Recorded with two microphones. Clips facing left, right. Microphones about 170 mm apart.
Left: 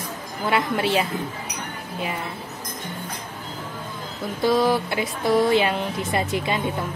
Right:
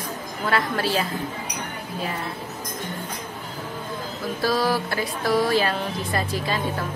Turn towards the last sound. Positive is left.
turn(degrees=20)  # may be behind; listen again after turning